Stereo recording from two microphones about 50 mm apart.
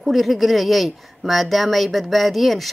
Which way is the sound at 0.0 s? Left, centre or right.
Centre.